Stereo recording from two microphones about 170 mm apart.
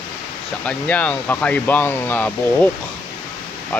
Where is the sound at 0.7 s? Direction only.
10° left (ahead or behind).